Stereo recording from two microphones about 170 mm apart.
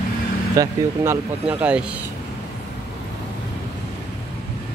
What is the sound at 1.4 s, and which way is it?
Speech, 5° right (ahead or behind).